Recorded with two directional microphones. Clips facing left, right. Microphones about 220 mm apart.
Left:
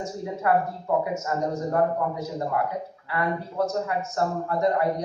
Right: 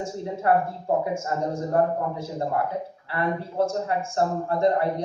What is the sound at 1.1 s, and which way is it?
Speech, 30° right (ahead or behind).